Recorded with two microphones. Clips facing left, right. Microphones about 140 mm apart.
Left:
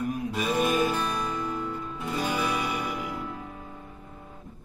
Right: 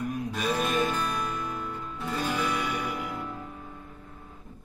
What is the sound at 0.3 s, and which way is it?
Music, 5° left (ahead or behind).